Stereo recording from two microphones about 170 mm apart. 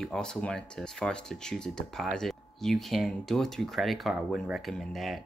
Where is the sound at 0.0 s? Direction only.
5° left (ahead or behind).